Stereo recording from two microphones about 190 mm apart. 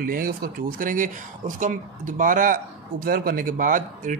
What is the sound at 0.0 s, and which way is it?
A man's voice, 50° right (ahead or behind).